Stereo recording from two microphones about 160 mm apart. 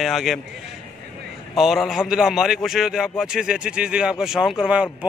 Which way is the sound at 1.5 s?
Centre (ahead or behind).